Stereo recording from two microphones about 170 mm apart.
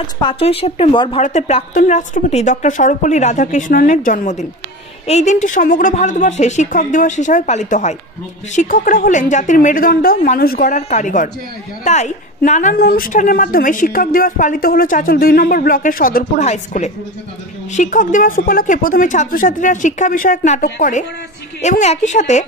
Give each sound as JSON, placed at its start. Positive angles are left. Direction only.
{"t": 0.2, "sound": "a woman's voice", "side_deg": 30}
{"t": 1.2, "sound": "a woman's voice", "side_deg": 45}
{"t": 12.7, "sound": "a woman's voice", "side_deg": 60}